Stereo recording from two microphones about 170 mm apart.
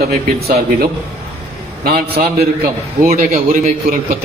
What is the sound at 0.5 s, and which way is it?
Speech, 65° right (ahead or behind).